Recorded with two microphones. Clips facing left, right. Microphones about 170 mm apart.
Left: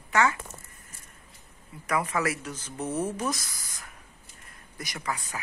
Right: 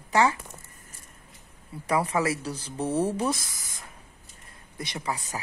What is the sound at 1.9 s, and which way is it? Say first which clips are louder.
Speech: right 3 dB; 30° right (ahead or behind).